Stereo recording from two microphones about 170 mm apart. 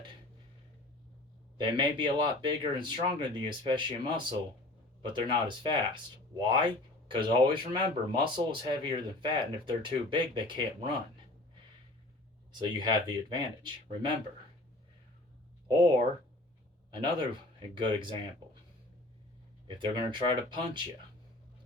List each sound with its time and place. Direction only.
1.5 s speech: 25° right (ahead or behind)
12.5 s speech: 25° right (ahead or behind)
16.9 s speech: 25° right (ahead or behind)
19.6 s speech: 25° right (ahead or behind)